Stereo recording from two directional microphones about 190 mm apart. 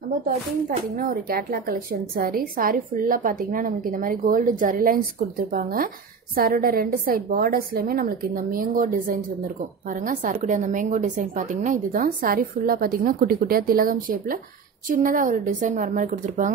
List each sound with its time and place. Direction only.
0.7 s a woman's voice: 50° right (ahead or behind)